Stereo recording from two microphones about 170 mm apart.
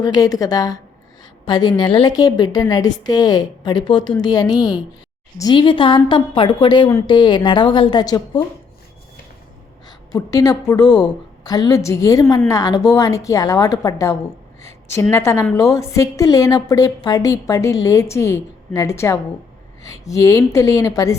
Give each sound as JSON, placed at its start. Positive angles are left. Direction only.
{"t": 0.0, "sound": "a woman's voice", "side_deg": 25}
{"t": 10.1, "sound": "a woman's voice", "side_deg": 20}